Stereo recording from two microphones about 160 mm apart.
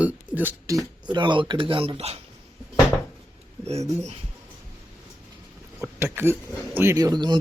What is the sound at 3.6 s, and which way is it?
Speech, 40° right (ahead or behind).